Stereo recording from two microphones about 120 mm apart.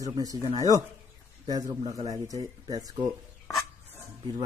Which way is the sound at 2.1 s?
30° right (ahead or behind).